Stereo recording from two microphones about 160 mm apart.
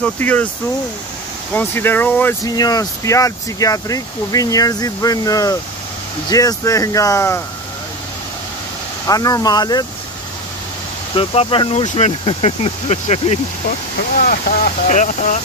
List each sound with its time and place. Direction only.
0.0 s speech: 10° left (ahead or behind)
1.5 s speech: 10° left (ahead or behind)
2.4 s speech: 25° left (ahead or behind)
9.0 s speech: 20° left (ahead or behind)
11.1 s speech: 35° left (ahead or behind)
14.1 s speech: 65° left (ahead or behind)
14.9 s speech: 50° left (ahead or behind)